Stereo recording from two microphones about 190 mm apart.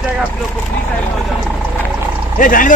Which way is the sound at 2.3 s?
45° left (ahead or behind).